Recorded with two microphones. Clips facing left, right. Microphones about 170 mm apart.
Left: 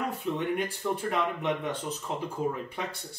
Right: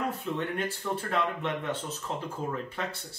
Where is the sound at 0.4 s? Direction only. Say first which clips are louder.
Left 2 dB; 15° left (ahead or behind).